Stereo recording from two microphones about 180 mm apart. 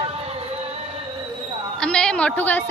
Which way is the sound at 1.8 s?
5° left (ahead or behind).